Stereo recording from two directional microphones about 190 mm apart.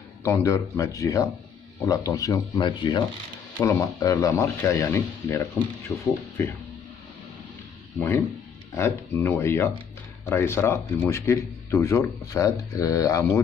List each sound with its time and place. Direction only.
0.2 s a man's voice: 15° left (ahead or behind)
8.7 s a man's voice: 10° left (ahead or behind)